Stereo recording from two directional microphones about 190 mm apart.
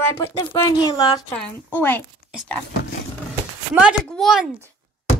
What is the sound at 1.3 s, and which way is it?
Speech, 10° left (ahead or behind).